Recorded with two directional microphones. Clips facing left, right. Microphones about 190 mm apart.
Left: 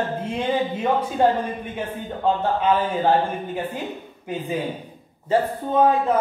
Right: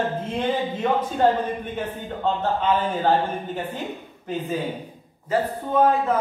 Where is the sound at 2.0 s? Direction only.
10° left (ahead or behind).